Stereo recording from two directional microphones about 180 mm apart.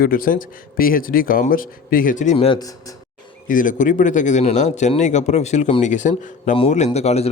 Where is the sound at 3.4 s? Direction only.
45° left (ahead or behind).